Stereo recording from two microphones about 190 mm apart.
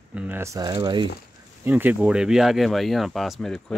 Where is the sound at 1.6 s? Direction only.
10° right (ahead or behind).